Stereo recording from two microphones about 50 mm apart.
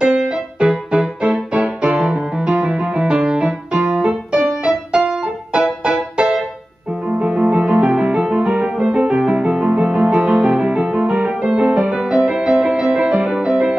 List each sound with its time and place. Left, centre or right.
0.0 s music: centre
1.2 s music: right